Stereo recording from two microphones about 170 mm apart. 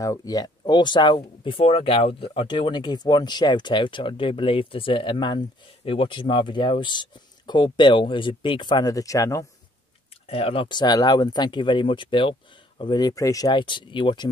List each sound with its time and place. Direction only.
0.0 s speech: 20° left (ahead or behind)
10.2 s speech: 35° left (ahead or behind)